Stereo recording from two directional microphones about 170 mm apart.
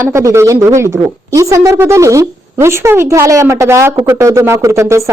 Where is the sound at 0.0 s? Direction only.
15° right (ahead or behind).